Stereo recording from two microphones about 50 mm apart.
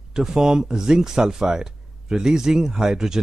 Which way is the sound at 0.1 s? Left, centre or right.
Centre.